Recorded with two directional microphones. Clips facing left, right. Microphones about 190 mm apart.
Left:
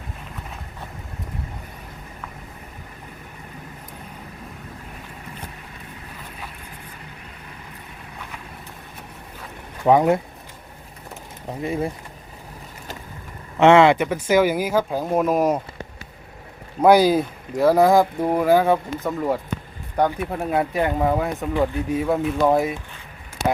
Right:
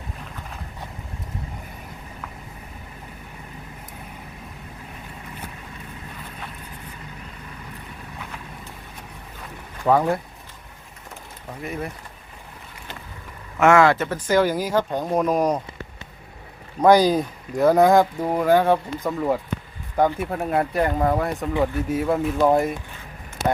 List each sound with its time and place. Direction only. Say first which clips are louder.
9.8 s speech: left 3 dB; 20° left (ahead or behind)
11.6 s speech: left 6 dB; 25° left (ahead or behind)
13.6 s speech: left 3 dB; 25° left (ahead or behind); by 15.6 s 5° left (ahead or behind)
16.8 s speech: left 1 dB; 5° left (ahead or behind)